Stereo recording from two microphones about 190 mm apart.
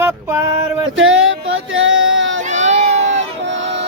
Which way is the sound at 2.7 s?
35° right (ahead or behind).